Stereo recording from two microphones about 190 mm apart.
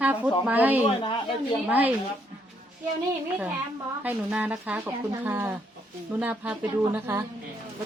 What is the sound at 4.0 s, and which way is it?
Speech, 10° right (ahead or behind).